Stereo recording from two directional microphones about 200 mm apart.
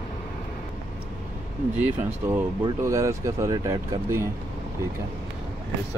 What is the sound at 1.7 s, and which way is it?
Speech, 10° right (ahead or behind).